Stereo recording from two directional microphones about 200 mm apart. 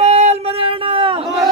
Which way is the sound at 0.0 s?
35° right (ahead or behind).